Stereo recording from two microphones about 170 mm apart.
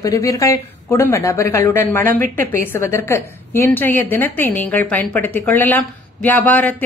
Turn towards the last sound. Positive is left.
turn(degrees=10)  # may be behind; listen again after turning